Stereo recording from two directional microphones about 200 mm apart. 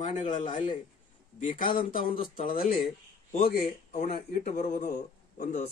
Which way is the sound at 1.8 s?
45° left (ahead or behind).